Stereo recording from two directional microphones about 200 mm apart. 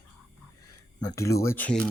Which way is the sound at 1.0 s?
15° left (ahead or behind).